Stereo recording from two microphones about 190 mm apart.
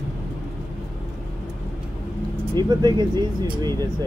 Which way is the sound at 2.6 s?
20° right (ahead or behind).